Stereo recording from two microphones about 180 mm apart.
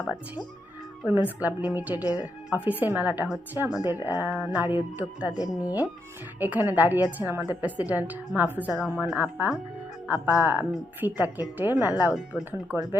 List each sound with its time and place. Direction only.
1.0 s a woman's voice: 10° right (ahead or behind)
2.0 s a woman's voice: 20° left (ahead or behind)
2.8 s a woman's voice: 10° right (ahead or behind)
3.7 s speech: 20° left (ahead or behind)
4.0 s a woman's voice: 10° right (ahead or behind)
5.3 s speech: 20° left (ahead or behind)
6.4 s a woman's voice: 10° right (ahead or behind)